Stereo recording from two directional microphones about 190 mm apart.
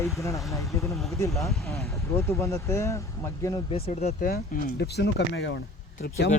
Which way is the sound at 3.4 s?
25° left (ahead or behind).